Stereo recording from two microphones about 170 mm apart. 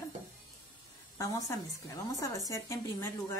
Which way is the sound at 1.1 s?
20° left (ahead or behind).